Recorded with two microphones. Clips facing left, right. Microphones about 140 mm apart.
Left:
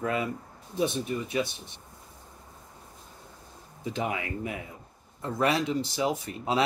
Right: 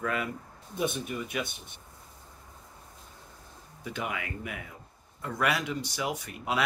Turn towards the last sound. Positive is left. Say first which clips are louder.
# left 4 dB
turn(degrees=30)  # may be behind; listen again after turning